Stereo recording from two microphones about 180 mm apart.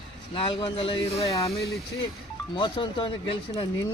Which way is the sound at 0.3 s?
30° left (ahead or behind).